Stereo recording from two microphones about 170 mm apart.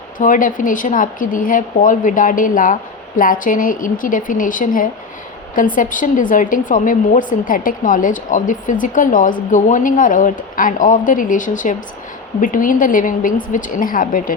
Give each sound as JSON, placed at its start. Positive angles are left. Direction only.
{"t": 0.2, "sound": "a woman's voice", "side_deg": 50}